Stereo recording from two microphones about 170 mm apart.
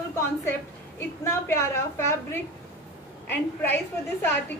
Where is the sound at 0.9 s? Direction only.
15° left (ahead or behind).